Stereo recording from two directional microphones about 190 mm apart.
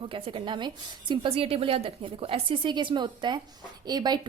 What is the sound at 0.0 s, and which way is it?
A woman's voice, 25° right (ahead or behind).